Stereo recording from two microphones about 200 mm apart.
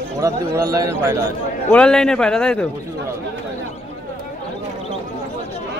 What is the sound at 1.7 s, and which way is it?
Speech, 5° left (ahead or behind).